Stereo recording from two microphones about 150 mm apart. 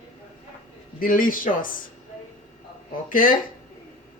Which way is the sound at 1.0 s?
65° left (ahead or behind).